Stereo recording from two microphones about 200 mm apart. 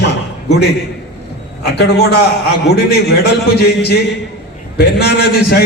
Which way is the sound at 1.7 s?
55° left (ahead or behind).